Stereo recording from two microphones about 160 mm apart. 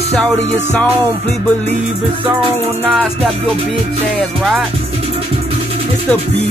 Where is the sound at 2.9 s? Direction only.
Centre (ahead or behind).